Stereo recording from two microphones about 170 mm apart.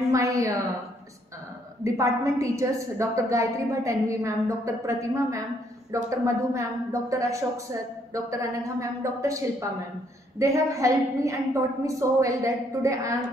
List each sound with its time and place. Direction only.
0.1 s a woman's voice: 20° right (ahead or behind)
1.9 s a woman's voice: 20° right (ahead or behind)